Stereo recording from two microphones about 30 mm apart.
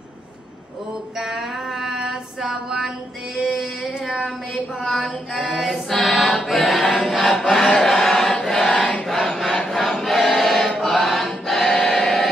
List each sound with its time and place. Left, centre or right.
1.2 s mantra: centre
3.4 s a sound: centre
4.8 s female singing: centre
5.6 s choir: centre
7.5 s chant: centre
8.1 s choir: centre
8.5 s a sound: centre
9.7 s choir: centre